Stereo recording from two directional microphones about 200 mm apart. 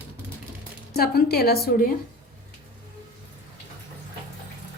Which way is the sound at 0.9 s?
50° left (ahead or behind).